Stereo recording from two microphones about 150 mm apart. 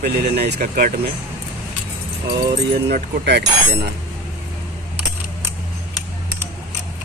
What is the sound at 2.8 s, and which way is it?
Speech, 90° right.